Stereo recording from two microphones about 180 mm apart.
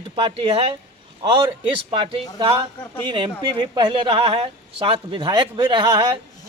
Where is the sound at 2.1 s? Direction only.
30° right (ahead or behind).